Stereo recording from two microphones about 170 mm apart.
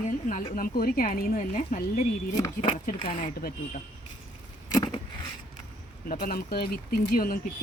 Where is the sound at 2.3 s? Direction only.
20° left (ahead or behind).